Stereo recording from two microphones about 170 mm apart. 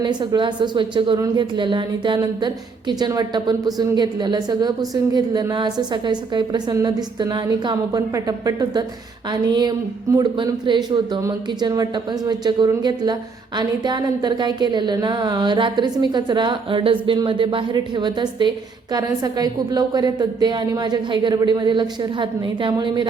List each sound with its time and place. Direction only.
0.0 s a woman's voice: 25° right (ahead or behind)